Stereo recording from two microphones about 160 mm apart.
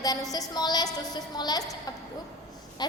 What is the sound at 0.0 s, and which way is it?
A woman's voice, 25° left (ahead or behind).